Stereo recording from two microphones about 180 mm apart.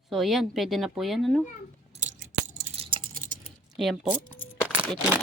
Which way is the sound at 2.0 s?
45° right (ahead or behind).